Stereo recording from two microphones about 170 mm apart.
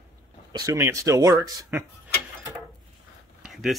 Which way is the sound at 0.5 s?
20° right (ahead or behind).